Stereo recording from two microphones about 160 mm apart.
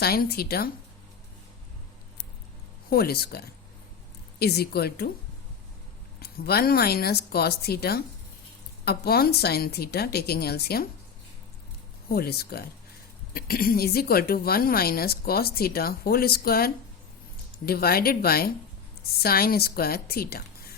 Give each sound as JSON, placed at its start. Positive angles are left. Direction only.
{"t": 0.0, "sound": "speech", "side_deg": 75}
{"t": 2.9, "sound": "a woman's voice", "side_deg": 75}
{"t": 6.1, "sound": "speech", "side_deg": 75}
{"t": 12.1, "sound": "speech", "side_deg": 80}
{"t": 13.3, "sound": "speech", "side_deg": 65}